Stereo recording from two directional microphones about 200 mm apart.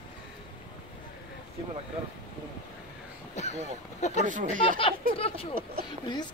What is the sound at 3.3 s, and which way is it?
Speech, 35° left (ahead or behind).